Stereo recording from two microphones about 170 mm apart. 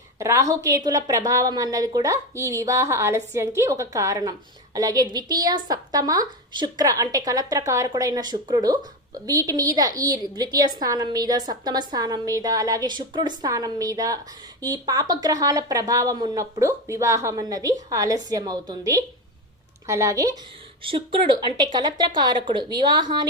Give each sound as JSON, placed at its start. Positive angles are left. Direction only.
{"t": 0.2, "sound": "a woman's voice", "side_deg": -20}
{"t": 20.8, "sound": "a woman's voice", "side_deg": -30}